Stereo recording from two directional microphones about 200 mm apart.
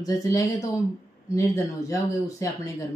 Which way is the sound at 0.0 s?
15° left (ahead or behind).